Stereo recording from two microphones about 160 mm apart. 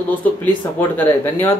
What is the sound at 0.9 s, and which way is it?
Speech, 10° left (ahead or behind).